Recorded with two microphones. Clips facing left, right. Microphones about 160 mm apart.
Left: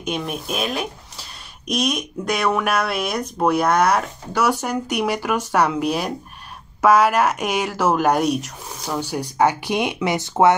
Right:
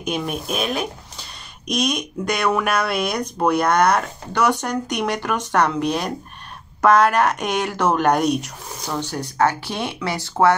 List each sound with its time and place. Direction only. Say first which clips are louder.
0.0 s speech: right 1 dB; centre (ahead or behind)
9.0 s speech: left 1 dB; 10° left (ahead or behind)